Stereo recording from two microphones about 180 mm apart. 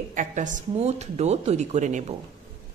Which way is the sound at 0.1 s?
45° right (ahead or behind).